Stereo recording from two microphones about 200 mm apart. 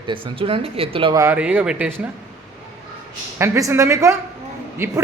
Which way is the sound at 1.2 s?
10° right (ahead or behind).